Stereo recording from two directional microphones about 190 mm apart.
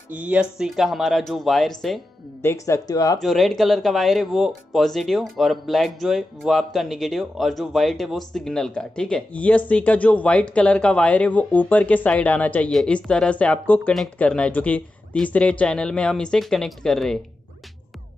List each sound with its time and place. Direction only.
0.1 s speech: 10° right (ahead or behind)
2.4 s speech: 15° left (ahead or behind)
3.2 s speech: centre (ahead or behind)